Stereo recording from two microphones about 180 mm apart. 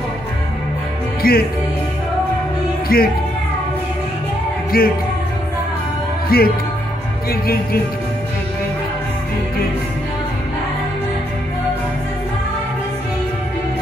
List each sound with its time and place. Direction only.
1.2 s music: 55° left (ahead or behind)
2.9 s music: 55° left (ahead or behind)
4.7 s music: 55° left (ahead or behind)
6.3 s music: 55° left (ahead or behind)